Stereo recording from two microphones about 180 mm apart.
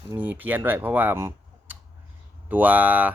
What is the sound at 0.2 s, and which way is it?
Speech, 10° right (ahead or behind).